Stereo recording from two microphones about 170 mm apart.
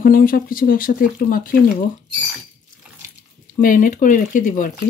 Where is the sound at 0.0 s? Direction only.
55° left (ahead or behind).